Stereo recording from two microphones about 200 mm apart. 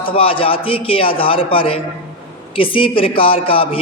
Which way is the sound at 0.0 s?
25° left (ahead or behind).